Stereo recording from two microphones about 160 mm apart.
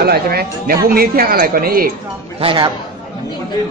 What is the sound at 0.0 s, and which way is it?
A woman's voice, 75° right (ahead or behind).